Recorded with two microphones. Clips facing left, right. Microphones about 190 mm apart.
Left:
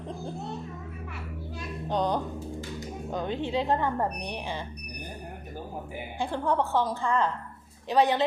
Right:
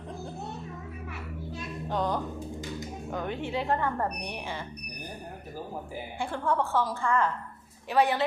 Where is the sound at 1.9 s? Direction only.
20° left (ahead or behind).